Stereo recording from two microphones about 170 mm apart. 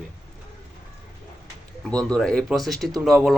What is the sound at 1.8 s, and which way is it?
Speech, 5° left (ahead or behind).